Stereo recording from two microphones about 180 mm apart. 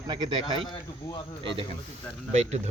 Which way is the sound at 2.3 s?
40° right (ahead or behind).